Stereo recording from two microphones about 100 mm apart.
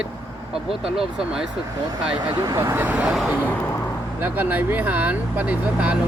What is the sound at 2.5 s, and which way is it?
Speech, 25° right (ahead or behind).